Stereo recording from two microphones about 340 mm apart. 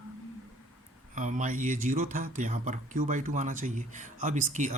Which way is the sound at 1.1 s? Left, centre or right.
Right.